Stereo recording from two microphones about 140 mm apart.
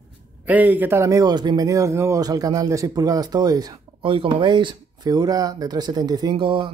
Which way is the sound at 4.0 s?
40° right (ahead or behind).